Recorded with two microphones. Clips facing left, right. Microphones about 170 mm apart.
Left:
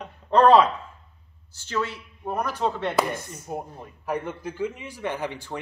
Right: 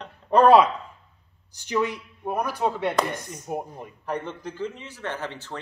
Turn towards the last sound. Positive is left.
turn(degrees=15)  # may be behind; listen again after turning